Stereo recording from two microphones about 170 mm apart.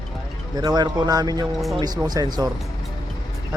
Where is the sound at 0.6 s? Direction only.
25° right (ahead or behind).